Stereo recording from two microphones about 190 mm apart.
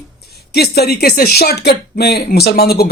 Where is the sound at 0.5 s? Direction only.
55° left (ahead or behind).